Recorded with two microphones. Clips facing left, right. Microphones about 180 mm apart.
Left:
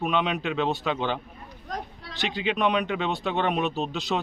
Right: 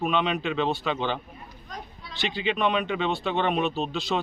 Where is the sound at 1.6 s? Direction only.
75° left (ahead or behind).